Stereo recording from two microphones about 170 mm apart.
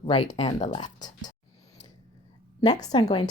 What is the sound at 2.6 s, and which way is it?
Speech, 25° left (ahead or behind).